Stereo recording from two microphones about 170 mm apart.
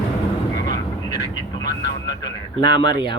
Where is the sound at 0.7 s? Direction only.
25° left (ahead or behind).